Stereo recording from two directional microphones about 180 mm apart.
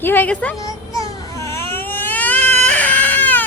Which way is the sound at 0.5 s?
20° left (ahead or behind).